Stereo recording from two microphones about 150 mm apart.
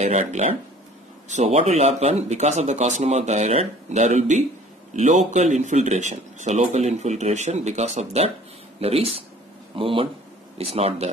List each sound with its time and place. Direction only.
0.0 s speech: 50° right (ahead or behind)